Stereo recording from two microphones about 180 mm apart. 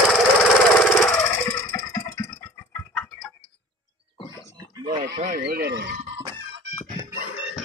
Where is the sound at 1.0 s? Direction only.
10° left (ahead or behind).